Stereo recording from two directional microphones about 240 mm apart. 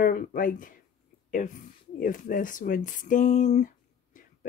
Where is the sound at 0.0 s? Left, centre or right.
Left.